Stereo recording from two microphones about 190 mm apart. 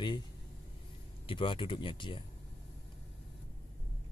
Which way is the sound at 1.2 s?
25° left (ahead or behind).